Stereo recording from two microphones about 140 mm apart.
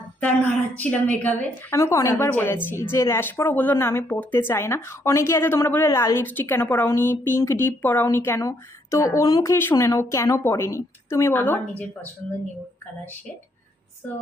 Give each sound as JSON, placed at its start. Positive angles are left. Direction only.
{"t": 0.8, "sound": "a woman's voice", "side_deg": 10}
{"t": 1.7, "sound": "a woman's voice", "side_deg": 20}